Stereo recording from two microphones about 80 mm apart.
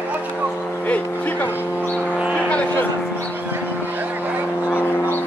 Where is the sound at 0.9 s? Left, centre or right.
Left.